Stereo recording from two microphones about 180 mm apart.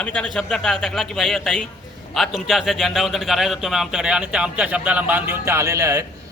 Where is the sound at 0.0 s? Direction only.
5° left (ahead or behind).